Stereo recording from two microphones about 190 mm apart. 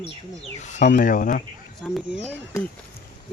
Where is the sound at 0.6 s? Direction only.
40° left (ahead or behind).